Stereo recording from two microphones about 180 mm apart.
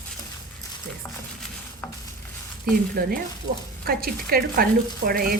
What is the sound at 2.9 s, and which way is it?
Speech, 55° right (ahead or behind).